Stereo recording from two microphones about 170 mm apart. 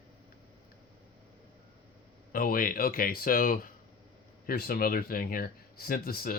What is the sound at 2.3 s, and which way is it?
Speech, 55° left (ahead or behind).